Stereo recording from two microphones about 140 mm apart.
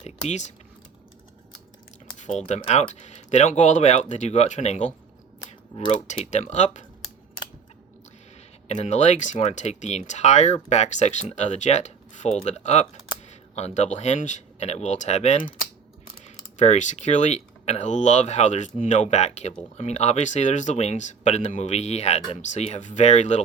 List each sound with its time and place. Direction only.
0.0 s speech: 55° left (ahead or behind)
2.1 s a sound: 55° left (ahead or behind)
2.5 s speech: 55° left (ahead or behind)
6.3 s speech: 55° left (ahead or behind)
8.6 s speech: 50° left (ahead or behind)